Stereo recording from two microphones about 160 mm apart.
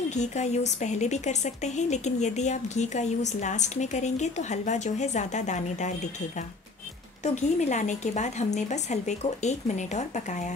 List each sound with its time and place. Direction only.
0.1 s speech: 45° left (ahead or behind)
7.2 s speech: 50° left (ahead or behind)